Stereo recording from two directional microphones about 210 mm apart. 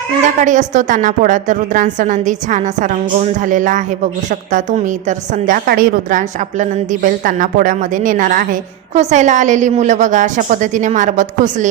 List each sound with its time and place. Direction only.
0.3 s a woman's voice: 35° right (ahead or behind)